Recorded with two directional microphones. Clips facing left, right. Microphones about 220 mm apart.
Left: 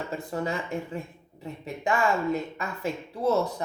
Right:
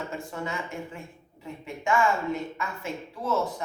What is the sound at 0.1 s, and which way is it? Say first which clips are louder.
A woman's voice: left 4 dB; 35° left (ahead or behind).